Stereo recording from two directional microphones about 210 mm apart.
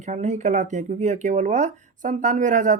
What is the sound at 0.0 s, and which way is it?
Speech, 35° right (ahead or behind).